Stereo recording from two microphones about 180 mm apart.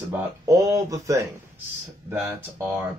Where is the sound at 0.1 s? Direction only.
20° right (ahead or behind).